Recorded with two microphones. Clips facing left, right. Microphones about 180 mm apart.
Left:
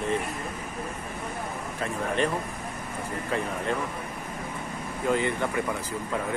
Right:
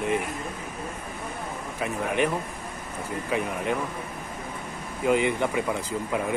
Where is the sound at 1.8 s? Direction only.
15° right (ahead or behind).